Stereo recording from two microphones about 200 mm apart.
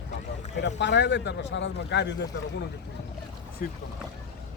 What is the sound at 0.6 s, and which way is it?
A man's voice, 60° left (ahead or behind).